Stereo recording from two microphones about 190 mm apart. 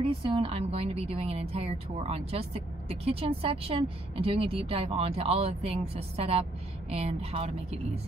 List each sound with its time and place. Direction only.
0.0 s speech: 30° right (ahead or behind)